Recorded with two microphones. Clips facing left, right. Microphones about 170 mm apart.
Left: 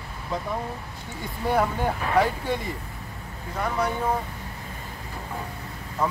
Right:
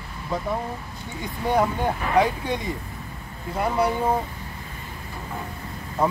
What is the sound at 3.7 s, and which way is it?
Speech, 30° right (ahead or behind).